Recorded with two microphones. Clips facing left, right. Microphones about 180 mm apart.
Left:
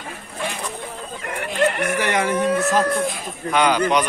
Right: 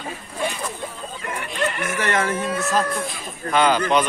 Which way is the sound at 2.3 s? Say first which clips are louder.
Left 5 dB; 60° left (ahead or behind).